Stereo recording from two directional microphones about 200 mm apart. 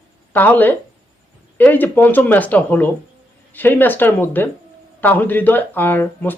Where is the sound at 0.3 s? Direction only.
10° left (ahead or behind).